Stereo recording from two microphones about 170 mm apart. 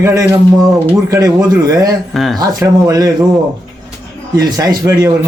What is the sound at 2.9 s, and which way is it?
Speech, 20° right (ahead or behind).